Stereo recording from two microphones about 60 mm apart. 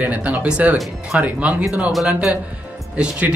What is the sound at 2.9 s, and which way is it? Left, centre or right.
Speech, centre.